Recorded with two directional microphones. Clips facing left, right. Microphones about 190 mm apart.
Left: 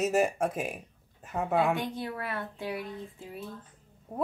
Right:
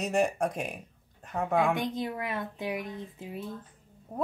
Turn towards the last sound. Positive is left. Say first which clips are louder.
# even
turn(degrees=-5)  # may be behind; listen again after turning